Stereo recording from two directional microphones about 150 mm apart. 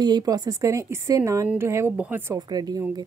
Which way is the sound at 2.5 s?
25° right (ahead or behind).